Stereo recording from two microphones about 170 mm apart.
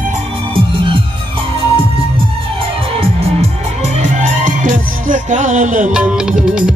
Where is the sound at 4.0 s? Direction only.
45° right (ahead or behind).